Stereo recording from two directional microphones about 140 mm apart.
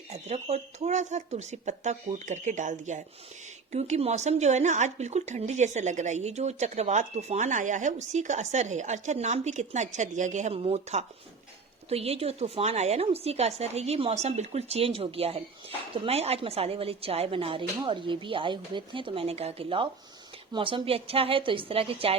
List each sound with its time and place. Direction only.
0.1 s a woman's voice: 50° right (ahead or behind)